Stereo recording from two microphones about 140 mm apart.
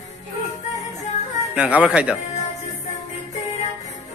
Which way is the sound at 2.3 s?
50° left (ahead or behind).